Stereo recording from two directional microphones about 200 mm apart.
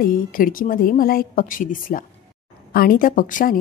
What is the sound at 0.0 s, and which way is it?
A woman's voice, 45° left (ahead or behind).